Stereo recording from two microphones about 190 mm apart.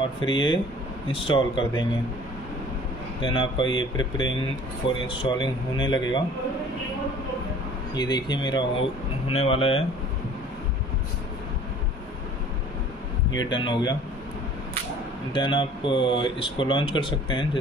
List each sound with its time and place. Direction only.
0.3 s speech: 25° left (ahead or behind)
3.2 s speech: 25° left (ahead or behind)
3.6 s speech: 90° left
5.0 s speech: 25° left (ahead or behind)
7.9 s speech: 20° left (ahead or behind)
13.3 s speech: 25° left (ahead or behind)
15.3 s speech: 25° left (ahead or behind)